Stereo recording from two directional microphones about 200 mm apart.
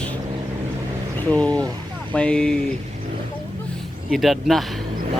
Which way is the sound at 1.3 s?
5° left (ahead or behind).